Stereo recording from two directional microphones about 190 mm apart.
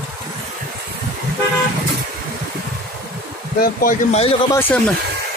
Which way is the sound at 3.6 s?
45° left (ahead or behind).